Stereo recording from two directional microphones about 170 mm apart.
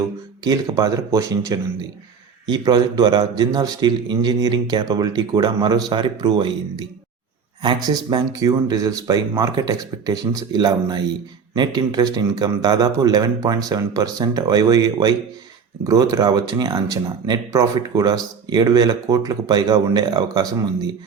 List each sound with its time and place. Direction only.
0.4 s speech: 20° right (ahead or behind)